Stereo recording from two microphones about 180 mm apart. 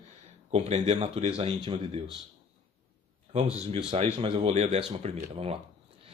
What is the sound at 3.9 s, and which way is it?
Speech, 35° right (ahead or behind).